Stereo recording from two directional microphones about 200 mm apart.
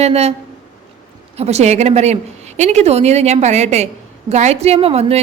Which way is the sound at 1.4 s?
30° right (ahead or behind).